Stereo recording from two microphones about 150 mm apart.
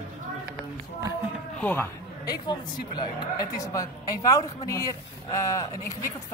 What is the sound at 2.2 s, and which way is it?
Speech, 25° left (ahead or behind).